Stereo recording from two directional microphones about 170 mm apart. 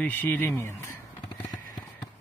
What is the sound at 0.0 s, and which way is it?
Speech, 10° left (ahead or behind).